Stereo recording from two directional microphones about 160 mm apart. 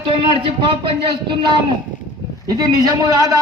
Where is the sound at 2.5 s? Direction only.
25° right (ahead or behind).